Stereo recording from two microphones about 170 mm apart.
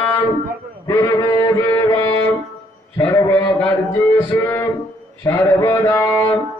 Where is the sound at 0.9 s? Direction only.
20° left (ahead or behind).